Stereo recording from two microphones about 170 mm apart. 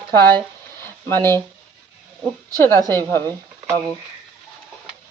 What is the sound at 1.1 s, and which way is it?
Speech, 15° left (ahead or behind).